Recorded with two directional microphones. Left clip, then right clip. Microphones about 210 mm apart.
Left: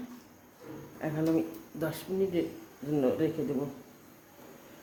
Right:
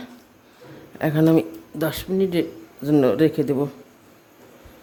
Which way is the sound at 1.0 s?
55° right (ahead or behind).